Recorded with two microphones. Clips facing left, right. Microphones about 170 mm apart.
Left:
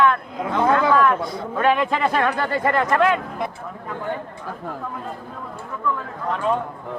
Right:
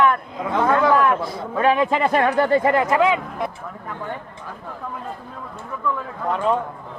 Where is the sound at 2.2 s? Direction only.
15° right (ahead or behind).